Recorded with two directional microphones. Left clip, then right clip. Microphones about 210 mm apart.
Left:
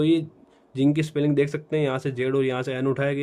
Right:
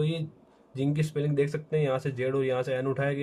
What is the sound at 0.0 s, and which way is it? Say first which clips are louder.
Speech: left 10 dB; 40° left (ahead or behind).